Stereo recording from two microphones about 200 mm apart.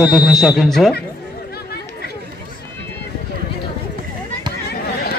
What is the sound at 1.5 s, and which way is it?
Chatter, 55° left (ahead or behind).